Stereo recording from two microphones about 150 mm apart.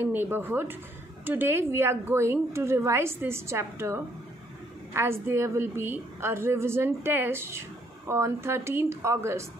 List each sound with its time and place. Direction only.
0.0 s a woman's voice: 15° right (ahead or behind)